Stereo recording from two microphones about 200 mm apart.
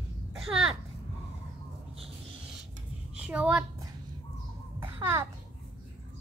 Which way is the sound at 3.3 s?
5° right (ahead or behind).